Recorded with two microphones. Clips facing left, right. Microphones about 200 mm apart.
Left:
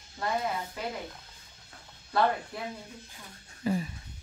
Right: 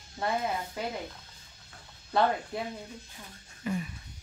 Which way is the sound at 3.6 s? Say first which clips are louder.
Left 3 dB; 30° left (ahead or behind).